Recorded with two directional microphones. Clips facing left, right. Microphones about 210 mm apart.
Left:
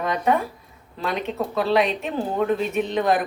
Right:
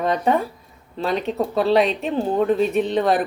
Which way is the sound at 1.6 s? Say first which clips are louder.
Right 3 dB; 35° right (ahead or behind).